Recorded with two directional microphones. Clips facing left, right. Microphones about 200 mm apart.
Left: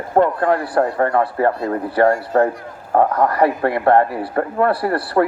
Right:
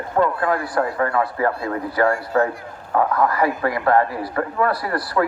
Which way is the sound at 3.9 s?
30° left (ahead or behind).